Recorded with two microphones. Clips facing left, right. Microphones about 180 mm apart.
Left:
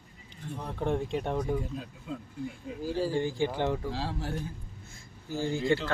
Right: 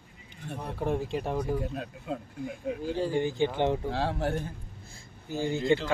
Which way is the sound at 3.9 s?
60° right (ahead or behind).